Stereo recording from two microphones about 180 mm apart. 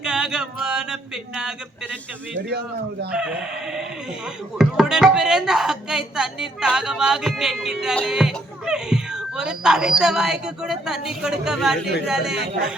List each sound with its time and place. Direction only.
0.0 s a sound: 5° right (ahead or behind)
2.5 s speech: 65° right (ahead or behind)
3.1 s speech: 5° right (ahead or behind)